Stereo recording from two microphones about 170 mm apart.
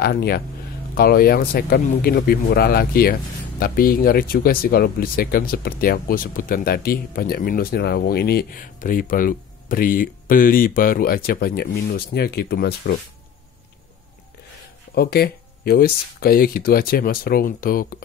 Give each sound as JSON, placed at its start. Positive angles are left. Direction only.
{"t": 0.0, "sound": "speech", "side_deg": 65}
{"t": 15.0, "sound": "speech", "side_deg": 65}